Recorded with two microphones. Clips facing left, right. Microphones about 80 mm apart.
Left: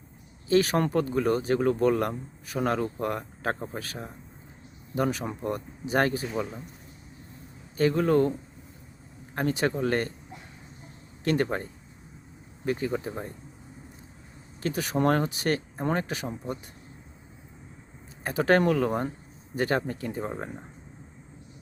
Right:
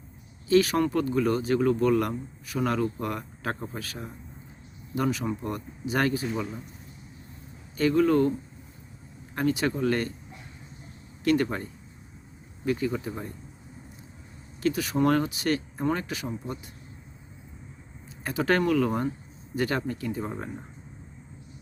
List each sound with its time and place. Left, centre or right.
0.4 s speech: left
4.9 s speech: left
7.8 s speech: left
9.3 s speech: left
11.2 s speech: left
12.6 s speech: left
14.6 s speech: left
18.2 s speech: left